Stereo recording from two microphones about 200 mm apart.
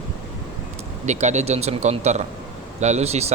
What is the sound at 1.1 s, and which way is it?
Speech, 35° right (ahead or behind).